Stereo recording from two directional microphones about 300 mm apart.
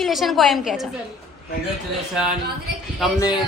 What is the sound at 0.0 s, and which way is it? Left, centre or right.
Speech, centre.